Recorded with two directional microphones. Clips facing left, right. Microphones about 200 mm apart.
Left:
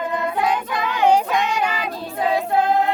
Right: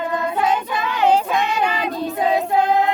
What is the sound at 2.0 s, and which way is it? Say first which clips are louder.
Choir: right 2 dB; 20° right (ahead or behind).